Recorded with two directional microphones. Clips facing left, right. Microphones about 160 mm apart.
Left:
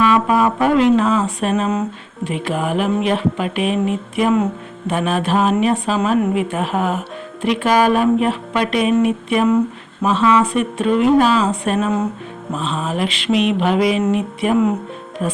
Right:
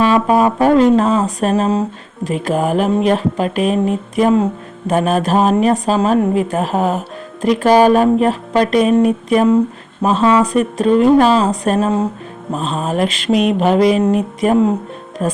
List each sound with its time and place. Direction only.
0.0 s speech: 35° right (ahead or behind)